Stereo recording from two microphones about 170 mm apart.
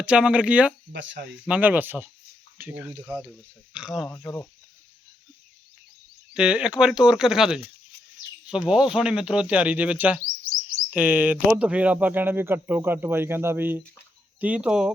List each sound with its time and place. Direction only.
0.0 s speech: 5° right (ahead or behind)
0.9 s speech: 90° right
1.5 s speech: 10° right (ahead or behind)
6.3 s speech: 5° right (ahead or behind)